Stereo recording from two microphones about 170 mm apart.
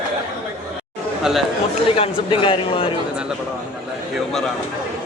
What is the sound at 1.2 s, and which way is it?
Speech, centre (ahead or behind).